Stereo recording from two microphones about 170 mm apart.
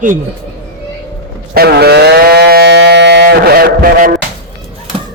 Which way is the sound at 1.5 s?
70° right (ahead or behind).